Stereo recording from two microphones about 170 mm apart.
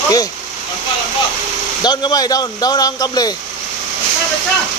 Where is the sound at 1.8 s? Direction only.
25° left (ahead or behind).